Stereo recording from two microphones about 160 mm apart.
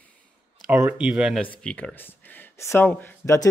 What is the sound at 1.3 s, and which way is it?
Speech, 10° left (ahead or behind).